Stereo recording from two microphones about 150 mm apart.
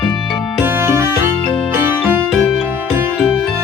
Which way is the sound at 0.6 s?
15° right (ahead or behind).